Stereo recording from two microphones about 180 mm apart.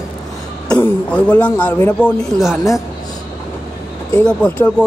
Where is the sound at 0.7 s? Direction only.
5° left (ahead or behind).